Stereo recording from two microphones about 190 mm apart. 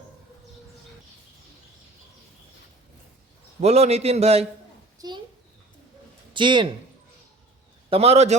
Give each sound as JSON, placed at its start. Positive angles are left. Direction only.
{"t": 3.6, "sound": "a man's voice", "side_deg": -35}
{"t": 4.9, "sound": "a sound", "side_deg": -20}
{"t": 6.3, "sound": "speech", "side_deg": -25}
{"t": 7.9, "sound": "a man's voice", "side_deg": -30}